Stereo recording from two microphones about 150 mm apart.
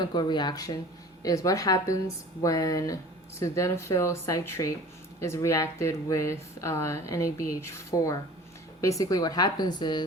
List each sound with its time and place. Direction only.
0.0 s speech: 30° left (ahead or behind)